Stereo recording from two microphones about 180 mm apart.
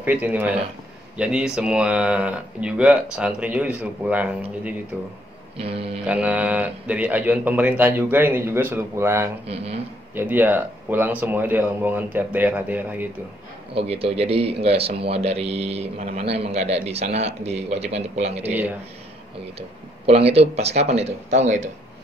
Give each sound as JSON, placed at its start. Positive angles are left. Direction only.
{"t": 0.0, "sound": "a man's voice", "side_deg": -10}
{"t": 5.6, "sound": "speech", "side_deg": -30}
{"t": 6.0, "sound": "a man's voice", "side_deg": -5}
{"t": 13.7, "sound": "speech", "side_deg": -30}
{"t": 18.5, "sound": "a man's voice", "side_deg": -10}
{"t": 20.1, "sound": "speech", "side_deg": -35}